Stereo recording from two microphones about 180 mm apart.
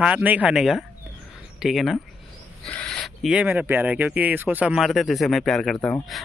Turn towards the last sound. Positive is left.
turn(degrees=5)  # may be behind; listen again after turning